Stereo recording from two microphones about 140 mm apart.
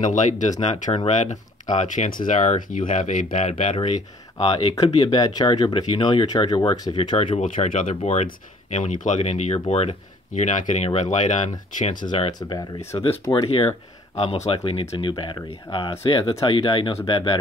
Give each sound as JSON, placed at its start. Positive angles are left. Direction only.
{"t": 0.0, "sound": "speech", "side_deg": 60}
{"t": 3.5, "sound": "speech", "side_deg": 45}
{"t": 5.1, "sound": "speech", "side_deg": 30}
{"t": 7.3, "sound": "speech", "side_deg": 55}
{"t": 11.9, "sound": "speech", "side_deg": 35}
{"t": 12.9, "sound": "speech", "side_deg": 45}